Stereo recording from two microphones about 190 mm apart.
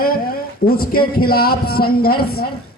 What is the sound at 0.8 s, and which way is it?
A man's voice, 50° left (ahead or behind).